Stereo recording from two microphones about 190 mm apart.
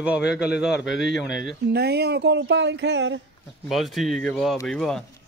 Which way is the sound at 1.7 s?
60° right (ahead or behind).